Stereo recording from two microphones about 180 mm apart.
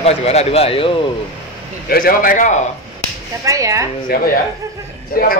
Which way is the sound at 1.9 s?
55° left (ahead or behind).